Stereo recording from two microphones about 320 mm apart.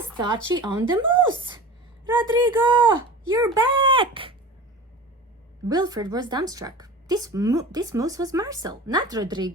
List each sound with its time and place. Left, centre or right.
0.2 s a woman's voice: centre
5.6 s a woman's voice: centre